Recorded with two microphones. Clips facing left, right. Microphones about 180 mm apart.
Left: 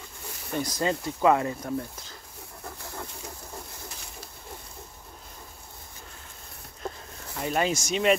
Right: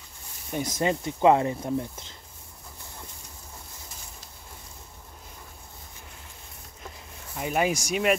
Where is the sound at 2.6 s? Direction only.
75° left (ahead or behind).